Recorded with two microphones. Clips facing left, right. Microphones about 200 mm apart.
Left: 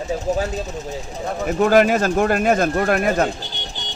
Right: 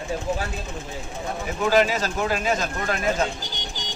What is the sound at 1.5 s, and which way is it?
Speech, 55° left (ahead or behind).